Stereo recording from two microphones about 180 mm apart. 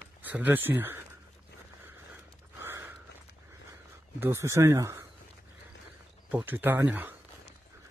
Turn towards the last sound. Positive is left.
turn(degrees=-10)  # may be behind; listen again after turning